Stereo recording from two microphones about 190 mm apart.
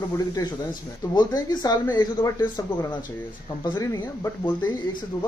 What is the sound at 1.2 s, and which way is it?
Speech, 20° left (ahead or behind).